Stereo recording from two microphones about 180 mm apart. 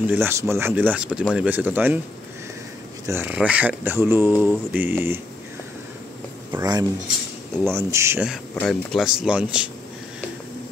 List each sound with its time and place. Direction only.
0.0 s speech: 10° right (ahead or behind)
3.1 s speech: 10° right (ahead or behind)
6.6 s speech: 20° right (ahead or behind)
8.5 s speech: centre (ahead or behind)